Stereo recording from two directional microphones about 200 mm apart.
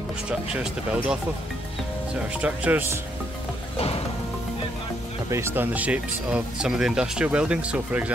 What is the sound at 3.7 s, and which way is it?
Music, 30° left (ahead or behind).